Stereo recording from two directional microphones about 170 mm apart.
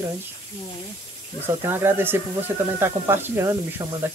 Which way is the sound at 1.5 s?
15° right (ahead or behind).